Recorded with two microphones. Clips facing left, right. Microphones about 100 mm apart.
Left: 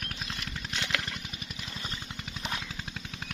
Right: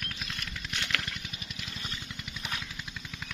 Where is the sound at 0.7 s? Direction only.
30° left (ahead or behind).